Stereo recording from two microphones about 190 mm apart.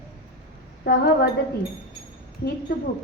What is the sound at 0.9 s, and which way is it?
Speech, 55° left (ahead or behind).